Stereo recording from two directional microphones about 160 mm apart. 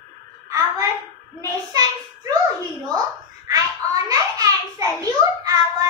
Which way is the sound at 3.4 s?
20° right (ahead or behind).